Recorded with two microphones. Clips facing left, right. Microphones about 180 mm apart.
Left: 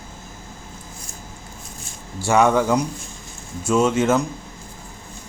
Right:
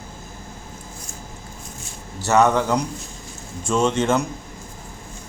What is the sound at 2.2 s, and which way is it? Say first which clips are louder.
Speech: left 1 dB; 10° left (ahead or behind).